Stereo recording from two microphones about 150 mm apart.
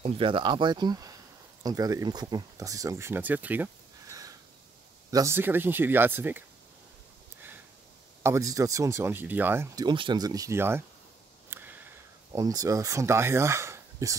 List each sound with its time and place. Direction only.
0.0 s speech: 35° right (ahead or behind); by 6.4 s 15° right (ahead or behind)
8.2 s speech: 20° right (ahead or behind)
9.8 s speech: 30° right (ahead or behind)
11.5 s a sound: 10° right (ahead or behind)
12.3 s speech: 25° right (ahead or behind)